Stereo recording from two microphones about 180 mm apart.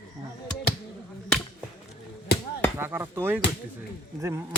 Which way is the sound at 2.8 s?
10° right (ahead or behind).